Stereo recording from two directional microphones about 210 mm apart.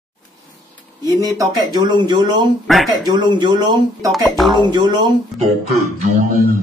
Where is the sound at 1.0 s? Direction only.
15° right (ahead or behind).